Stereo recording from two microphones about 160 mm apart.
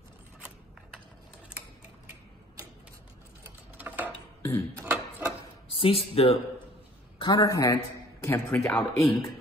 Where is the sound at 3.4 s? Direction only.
10° right (ahead or behind).